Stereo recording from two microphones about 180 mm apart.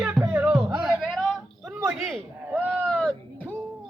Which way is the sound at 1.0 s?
Centre (ahead or behind).